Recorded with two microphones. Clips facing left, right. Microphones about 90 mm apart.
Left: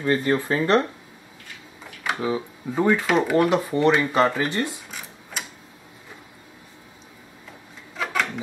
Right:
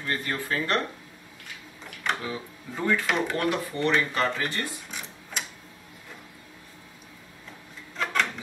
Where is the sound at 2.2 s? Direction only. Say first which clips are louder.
Left 9 dB; 25° left (ahead or behind).